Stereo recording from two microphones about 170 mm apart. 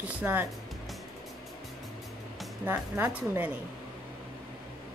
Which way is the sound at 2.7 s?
10° right (ahead or behind).